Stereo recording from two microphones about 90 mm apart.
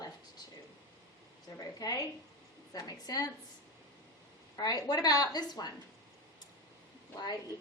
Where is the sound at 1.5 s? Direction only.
45° left (ahead or behind).